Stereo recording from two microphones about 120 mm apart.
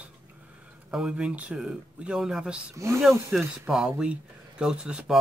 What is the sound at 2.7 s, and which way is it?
Speech, 25° right (ahead or behind).